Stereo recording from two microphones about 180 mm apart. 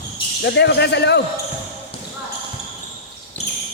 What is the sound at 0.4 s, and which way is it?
Speech, 70° left (ahead or behind).